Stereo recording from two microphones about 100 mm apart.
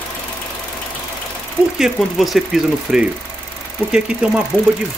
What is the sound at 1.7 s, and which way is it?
Speech, centre (ahead or behind).